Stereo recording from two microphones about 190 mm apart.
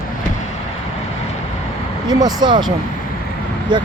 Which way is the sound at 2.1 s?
20° right (ahead or behind).